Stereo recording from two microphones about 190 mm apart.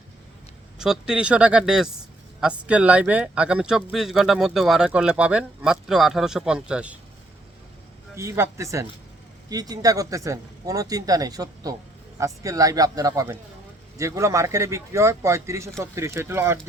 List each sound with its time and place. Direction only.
0.8 s speech: 5° right (ahead or behind)
8.1 s speech: 15° right (ahead or behind)